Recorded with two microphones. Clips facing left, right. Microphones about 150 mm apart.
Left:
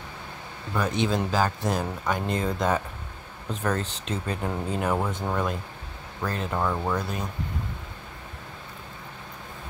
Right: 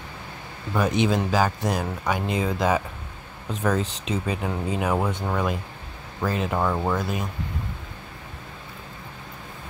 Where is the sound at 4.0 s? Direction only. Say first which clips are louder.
Right 3 dB; 5° right (ahead or behind).